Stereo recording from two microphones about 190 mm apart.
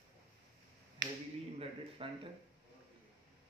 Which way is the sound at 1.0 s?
65° right (ahead or behind).